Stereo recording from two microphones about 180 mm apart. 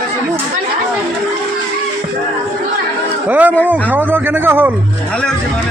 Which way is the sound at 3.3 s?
10° right (ahead or behind).